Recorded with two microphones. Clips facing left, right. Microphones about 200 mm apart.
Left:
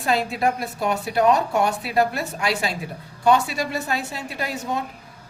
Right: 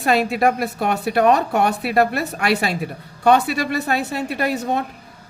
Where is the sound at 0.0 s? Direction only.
70° right (ahead or behind).